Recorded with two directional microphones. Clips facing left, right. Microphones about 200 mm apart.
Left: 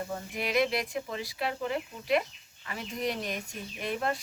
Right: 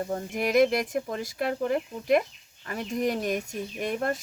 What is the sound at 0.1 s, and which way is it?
Speech, 45° right (ahead or behind).